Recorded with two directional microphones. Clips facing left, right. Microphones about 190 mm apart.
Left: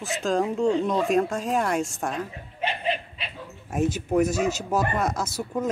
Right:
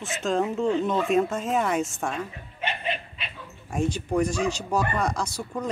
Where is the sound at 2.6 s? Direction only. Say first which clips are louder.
Left 3 dB; 35° left (ahead or behind).